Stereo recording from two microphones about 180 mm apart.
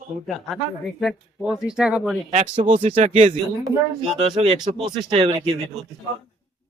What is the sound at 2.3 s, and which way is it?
Speech, 35° right (ahead or behind).